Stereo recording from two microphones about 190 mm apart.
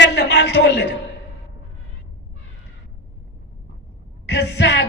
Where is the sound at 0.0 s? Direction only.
65° left (ahead or behind).